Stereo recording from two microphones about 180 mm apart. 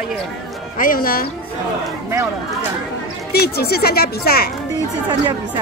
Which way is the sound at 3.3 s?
60° left (ahead or behind).